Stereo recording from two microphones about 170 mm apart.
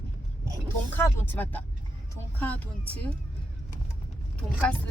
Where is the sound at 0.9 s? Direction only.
10° left (ahead or behind).